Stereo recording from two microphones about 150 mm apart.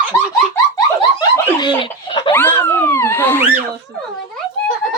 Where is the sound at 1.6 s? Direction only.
35° left (ahead or behind).